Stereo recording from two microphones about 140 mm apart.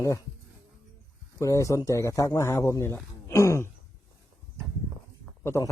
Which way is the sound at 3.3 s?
20° left (ahead or behind).